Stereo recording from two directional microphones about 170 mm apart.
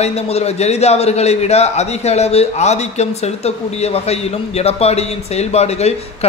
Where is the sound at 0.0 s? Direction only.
40° left (ahead or behind).